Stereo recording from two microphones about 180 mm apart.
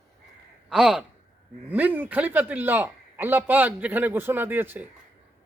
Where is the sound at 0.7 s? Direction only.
5° right (ahead or behind).